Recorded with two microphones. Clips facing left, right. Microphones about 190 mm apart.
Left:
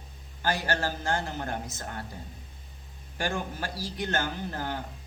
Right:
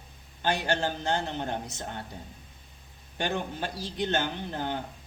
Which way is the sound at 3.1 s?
20° right (ahead or behind).